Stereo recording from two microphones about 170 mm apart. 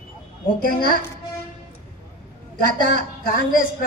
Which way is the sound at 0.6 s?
60° left (ahead or behind).